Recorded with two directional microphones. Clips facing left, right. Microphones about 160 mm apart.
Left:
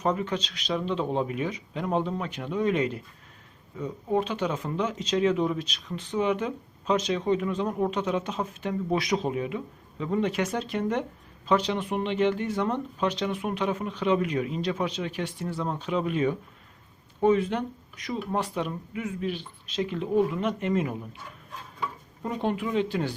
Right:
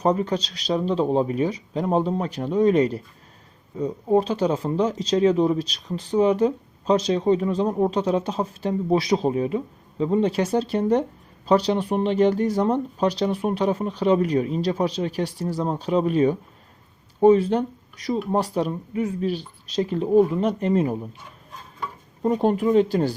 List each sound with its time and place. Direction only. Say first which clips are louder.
0.0 s speech: right 6 dB; 35° right (ahead or behind)
22.2 s speech: right 8 dB; 35° right (ahead or behind)